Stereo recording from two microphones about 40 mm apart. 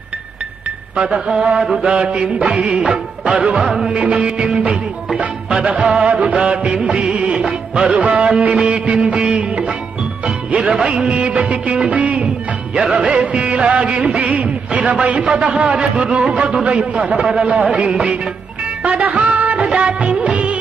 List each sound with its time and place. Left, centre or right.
0.9 s music of bollywood: right
3.6 s music: centre
3.9 s music of bollywood: right
12.7 s music of bollywood: right
18.8 s music: right
19.3 s music of bollywood: right
19.6 s music of bollywood: right